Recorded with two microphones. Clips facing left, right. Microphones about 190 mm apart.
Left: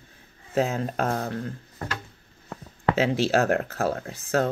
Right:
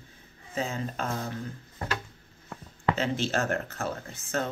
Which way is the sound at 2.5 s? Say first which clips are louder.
Left 3 dB; 35° left (ahead or behind).